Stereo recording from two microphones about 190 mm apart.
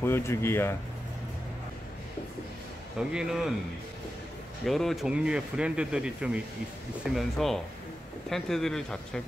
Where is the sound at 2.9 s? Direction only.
5° right (ahead or behind).